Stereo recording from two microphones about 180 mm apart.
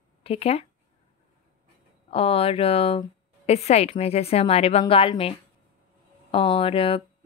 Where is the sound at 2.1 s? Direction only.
30° left (ahead or behind).